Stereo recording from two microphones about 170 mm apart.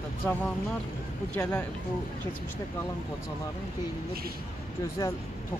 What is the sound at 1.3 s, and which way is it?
Speech, 10° left (ahead or behind).